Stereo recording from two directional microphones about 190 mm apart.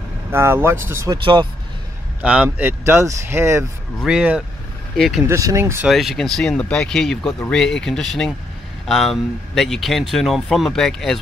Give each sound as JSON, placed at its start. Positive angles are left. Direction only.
{"t": 0.3, "sound": "speech", "side_deg": -15}
{"t": 2.2, "sound": "speech", "side_deg": -5}
{"t": 5.2, "sound": "speech", "side_deg": -15}
{"t": 5.9, "sound": "speech", "side_deg": 0}